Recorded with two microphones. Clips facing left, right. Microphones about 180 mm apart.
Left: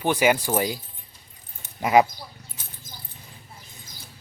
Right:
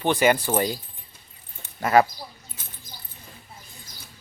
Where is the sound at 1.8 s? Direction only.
15° left (ahead or behind).